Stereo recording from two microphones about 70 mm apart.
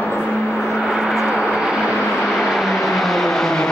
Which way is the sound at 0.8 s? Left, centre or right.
Centre.